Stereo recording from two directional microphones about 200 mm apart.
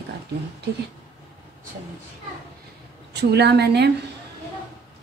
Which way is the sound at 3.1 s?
55° right (ahead or behind).